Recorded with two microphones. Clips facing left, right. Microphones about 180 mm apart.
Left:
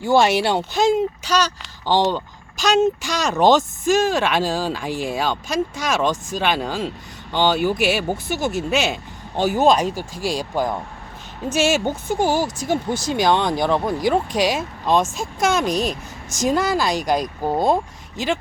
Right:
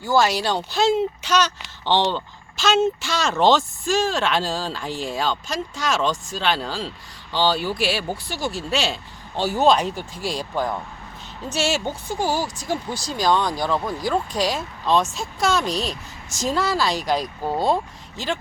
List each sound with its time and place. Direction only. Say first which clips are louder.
0.0 s speech: left 3 dB; 25° left (ahead or behind)
9.7 s speech: left 2 dB; 40° left (ahead or behind)
10.2 s speech: left 3 dB; 10° left (ahead or behind)